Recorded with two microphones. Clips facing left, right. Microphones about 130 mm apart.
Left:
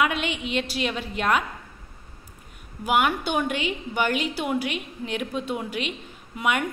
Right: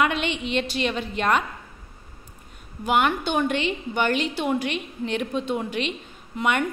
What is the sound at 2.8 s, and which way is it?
A woman's voice, 5° left (ahead or behind).